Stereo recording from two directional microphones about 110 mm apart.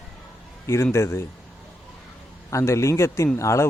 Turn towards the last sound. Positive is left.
turn(degrees=25)  # may be behind; listen again after turning